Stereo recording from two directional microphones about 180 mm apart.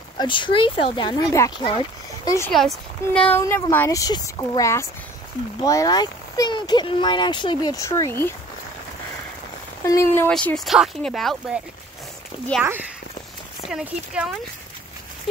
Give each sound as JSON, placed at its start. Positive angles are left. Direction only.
{"t": 0.2, "sound": "speech", "side_deg": 25}
{"t": 2.5, "sound": "speech", "side_deg": 0}
{"t": 9.8, "sound": "speech", "side_deg": 15}